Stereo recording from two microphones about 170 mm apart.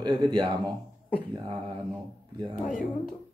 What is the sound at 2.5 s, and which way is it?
Speech, 50° left (ahead or behind).